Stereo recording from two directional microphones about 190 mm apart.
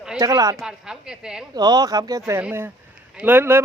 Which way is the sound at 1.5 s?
20° right (ahead or behind).